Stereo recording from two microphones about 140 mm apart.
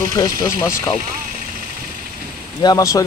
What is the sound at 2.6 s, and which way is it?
Speech, 25° left (ahead or behind).